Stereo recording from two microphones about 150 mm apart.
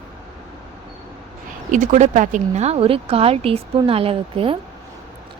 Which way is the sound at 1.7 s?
60° right (ahead or behind).